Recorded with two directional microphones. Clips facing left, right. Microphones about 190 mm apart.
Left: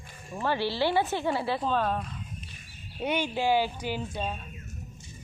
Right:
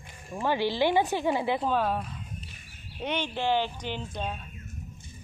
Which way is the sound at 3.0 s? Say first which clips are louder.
Left 2 dB; 10° left (ahead or behind).